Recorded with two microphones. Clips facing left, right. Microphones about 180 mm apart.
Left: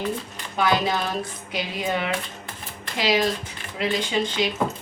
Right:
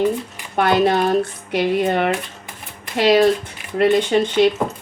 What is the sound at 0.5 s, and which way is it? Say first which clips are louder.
Speech: right 7 dB; 60° right (ahead or behind).